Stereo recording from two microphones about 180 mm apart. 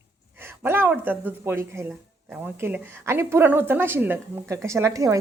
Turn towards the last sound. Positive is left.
turn(degrees=-15)  # may be behind; listen again after turning